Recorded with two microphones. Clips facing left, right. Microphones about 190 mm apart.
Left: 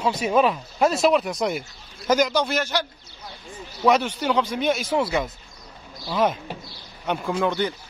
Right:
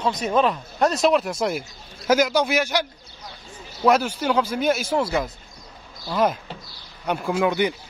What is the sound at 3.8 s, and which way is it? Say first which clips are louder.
Speech: right 1 dB; centre (ahead or behind).